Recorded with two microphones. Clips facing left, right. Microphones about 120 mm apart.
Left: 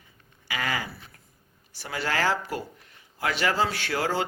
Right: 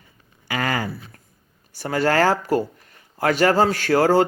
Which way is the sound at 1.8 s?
45° right (ahead or behind).